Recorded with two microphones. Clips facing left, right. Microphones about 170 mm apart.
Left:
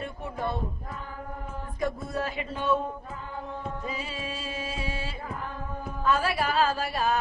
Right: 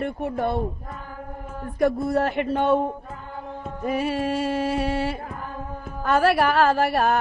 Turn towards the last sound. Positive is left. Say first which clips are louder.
# right 7 dB
turn(degrees=-65)  # may be behind; listen again after turning